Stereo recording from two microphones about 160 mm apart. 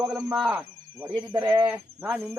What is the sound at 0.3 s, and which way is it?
Insect, 5° right (ahead or behind).